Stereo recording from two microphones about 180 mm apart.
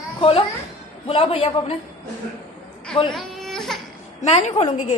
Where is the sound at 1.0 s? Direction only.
30° left (ahead or behind).